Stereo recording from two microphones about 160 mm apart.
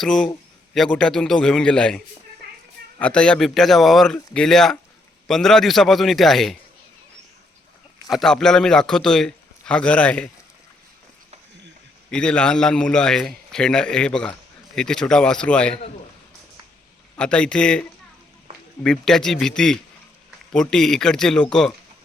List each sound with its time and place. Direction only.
0.0 s a man's voice: 5° left (ahead or behind)
2.4 s a sound: 80° right
3.0 s a man's voice: 5° left (ahead or behind)
8.1 s a man's voice: 5° left (ahead or behind)
12.1 s a man's voice: 5° left (ahead or behind)
17.2 s a man's voice: 5° left (ahead or behind)